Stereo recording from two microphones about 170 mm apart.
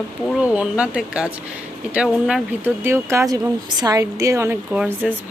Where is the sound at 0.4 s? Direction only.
5° right (ahead or behind).